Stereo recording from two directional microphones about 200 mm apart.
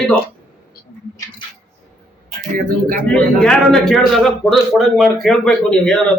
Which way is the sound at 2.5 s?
40° right (ahead or behind).